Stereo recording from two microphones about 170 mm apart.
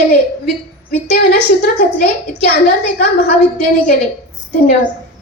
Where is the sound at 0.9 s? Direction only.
70° left (ahead or behind).